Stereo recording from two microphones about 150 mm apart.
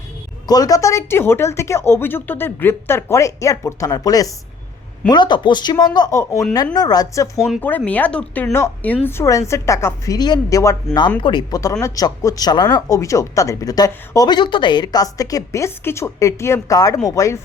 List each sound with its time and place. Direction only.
0.4 s a woman's voice: 25° left (ahead or behind)
7.3 s speech: 5° right (ahead or behind)
7.9 s a woman's voice: 10° left (ahead or behind)
11.2 s a woman's voice: 30° left (ahead or behind)